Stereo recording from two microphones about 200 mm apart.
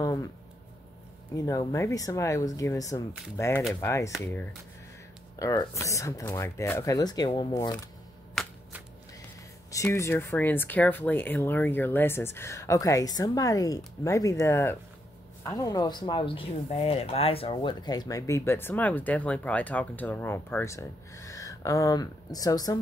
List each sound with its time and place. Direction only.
0.0 s a sound: 20° left (ahead or behind)
1.3 s speech: 15° left (ahead or behind)
9.7 s speech: 15° left (ahead or behind)